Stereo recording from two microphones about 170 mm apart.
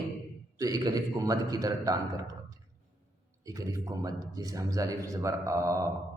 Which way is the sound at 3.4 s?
20° right (ahead or behind).